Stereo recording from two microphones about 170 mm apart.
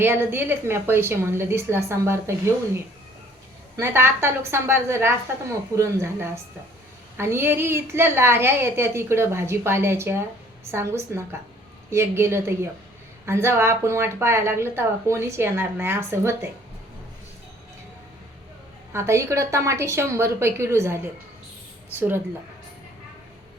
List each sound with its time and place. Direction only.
0.0 s a woman's voice: 15° right (ahead or behind)
3.8 s a woman's voice: 15° right (ahead or behind)
18.9 s a woman's voice: 15° right (ahead or behind)